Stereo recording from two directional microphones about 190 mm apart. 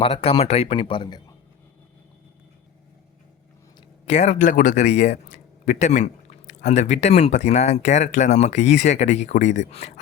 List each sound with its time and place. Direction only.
0.0 s speech: 30° left (ahead or behind)
3.8 s speech: 35° left (ahead or behind)